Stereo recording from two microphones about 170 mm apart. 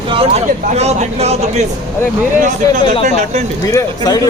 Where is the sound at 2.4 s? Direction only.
50° right (ahead or behind).